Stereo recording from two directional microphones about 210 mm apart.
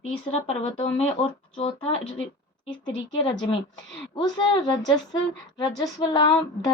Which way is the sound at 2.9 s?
20° left (ahead or behind).